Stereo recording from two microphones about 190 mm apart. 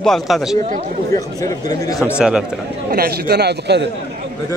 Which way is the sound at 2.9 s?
55° right (ahead or behind).